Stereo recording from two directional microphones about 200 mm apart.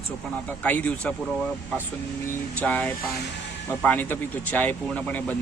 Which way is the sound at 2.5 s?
5° left (ahead or behind).